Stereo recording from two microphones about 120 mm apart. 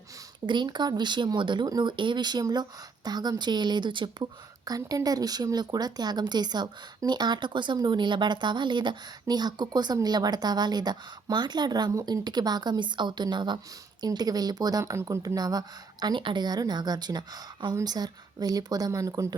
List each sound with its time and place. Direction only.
0.4 s speech: 40° right (ahead or behind)